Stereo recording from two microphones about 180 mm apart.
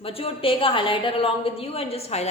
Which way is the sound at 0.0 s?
30° left (ahead or behind).